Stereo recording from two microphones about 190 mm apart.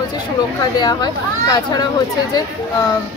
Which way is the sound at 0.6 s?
20° left (ahead or behind).